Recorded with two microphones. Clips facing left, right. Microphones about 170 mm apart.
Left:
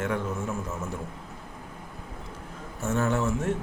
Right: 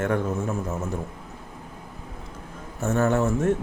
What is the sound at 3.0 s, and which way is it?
Speech, 50° right (ahead or behind).